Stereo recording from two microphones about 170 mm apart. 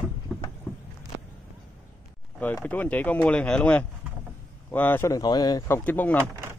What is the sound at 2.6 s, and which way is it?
Speech, 10° left (ahead or behind).